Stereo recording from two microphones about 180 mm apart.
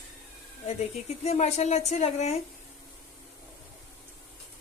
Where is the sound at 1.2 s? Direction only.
35° left (ahead or behind).